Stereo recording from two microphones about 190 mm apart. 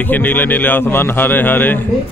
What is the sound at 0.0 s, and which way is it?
A man's voice, 10° left (ahead or behind).